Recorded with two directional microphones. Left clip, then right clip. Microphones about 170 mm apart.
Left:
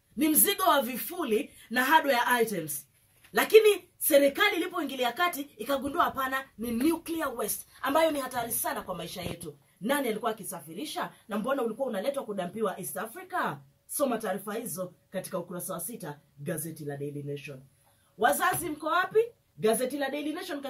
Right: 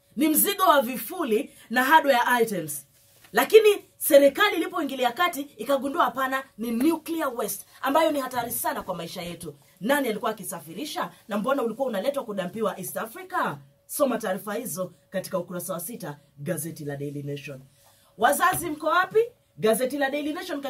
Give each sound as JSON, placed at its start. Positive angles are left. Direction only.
{"t": 0.9, "sound": "speech", "side_deg": -5}
{"t": 6.3, "sound": "a sound", "side_deg": -30}
{"t": 7.0, "sound": "speech", "side_deg": -10}